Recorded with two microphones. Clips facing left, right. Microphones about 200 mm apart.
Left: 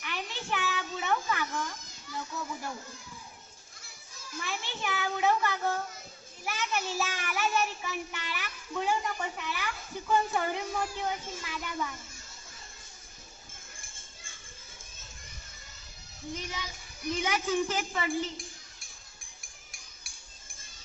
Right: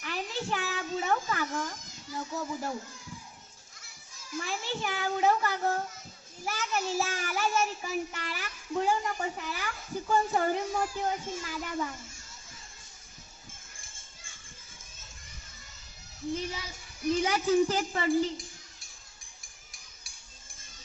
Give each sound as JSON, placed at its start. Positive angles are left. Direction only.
{"t": 0.0, "sound": "a sound", "side_deg": -35}
{"t": 2.1, "sound": "children playing", "side_deg": -35}
{"t": 4.4, "sound": "child singing", "side_deg": -35}
{"t": 16.3, "sound": "child singing", "side_deg": -30}